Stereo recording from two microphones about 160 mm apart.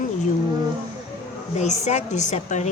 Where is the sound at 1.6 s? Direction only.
45° left (ahead or behind).